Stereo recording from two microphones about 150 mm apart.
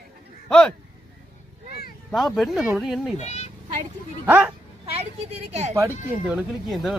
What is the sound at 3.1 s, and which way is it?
Speech, 45° left (ahead or behind).